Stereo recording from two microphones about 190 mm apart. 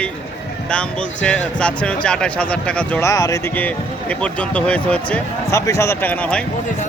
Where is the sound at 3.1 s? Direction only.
15° left (ahead or behind).